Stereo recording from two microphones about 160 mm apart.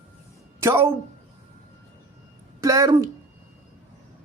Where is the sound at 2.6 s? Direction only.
20° right (ahead or behind).